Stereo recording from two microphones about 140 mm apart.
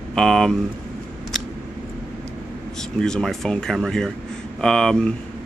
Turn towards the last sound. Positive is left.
turn(degrees=5)  # may be behind; listen again after turning